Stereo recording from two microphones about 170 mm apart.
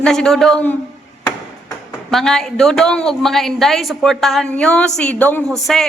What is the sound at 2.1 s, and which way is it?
A woman's voice, centre (ahead or behind).